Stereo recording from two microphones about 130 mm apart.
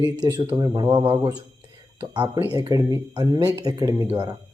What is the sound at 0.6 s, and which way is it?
Speech, 30° right (ahead or behind).